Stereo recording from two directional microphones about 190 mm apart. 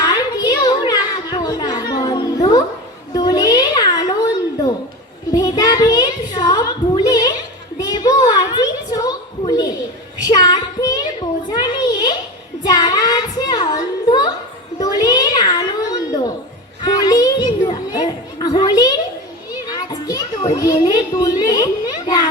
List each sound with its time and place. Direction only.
0.1 s children playing: 20° left (ahead or behind)
3.2 s a sound: 20° left (ahead or behind)
16.8 s child singing: 20° left (ahead or behind)
17.9 s children playing: 20° left (ahead or behind)